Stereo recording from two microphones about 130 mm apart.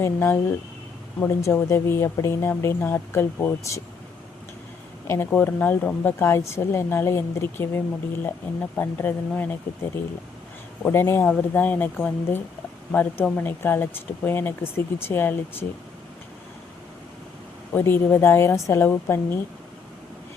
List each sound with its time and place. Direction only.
0.0 s speech: 20° left (ahead or behind)
5.0 s speech: 20° left (ahead or behind)
17.7 s speech: 15° left (ahead or behind)